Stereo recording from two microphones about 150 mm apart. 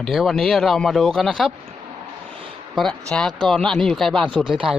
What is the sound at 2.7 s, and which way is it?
Speech, 5° left (ahead or behind).